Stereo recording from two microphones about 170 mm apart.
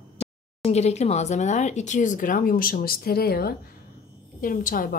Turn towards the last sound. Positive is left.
turn(degrees=55)  # may be behind; listen again after turning